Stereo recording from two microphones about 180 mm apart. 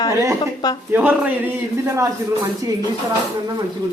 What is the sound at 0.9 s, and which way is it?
A man's voice, 10° right (ahead or behind).